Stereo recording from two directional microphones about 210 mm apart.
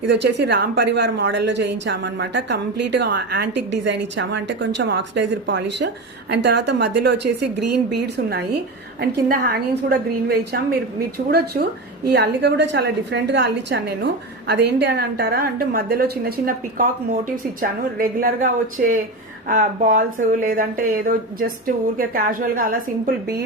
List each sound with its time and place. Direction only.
0.0 s a woman's voice: 55° right (ahead or behind)
19.5 s a woman's voice: 40° right (ahead or behind)